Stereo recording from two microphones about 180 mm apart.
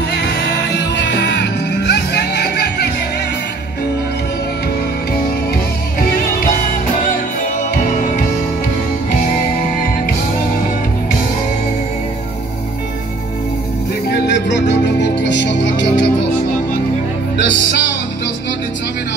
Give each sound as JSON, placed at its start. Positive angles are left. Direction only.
{"t": 0.1, "sound": "music", "side_deg": 65}
{"t": 5.9, "sound": "music", "side_deg": 55}
{"t": 14.0, "sound": "music", "side_deg": 75}
{"t": 17.4, "sound": "music", "side_deg": 75}